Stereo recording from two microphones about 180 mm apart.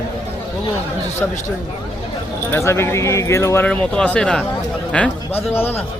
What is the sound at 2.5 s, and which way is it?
A man's voice, 15° left (ahead or behind).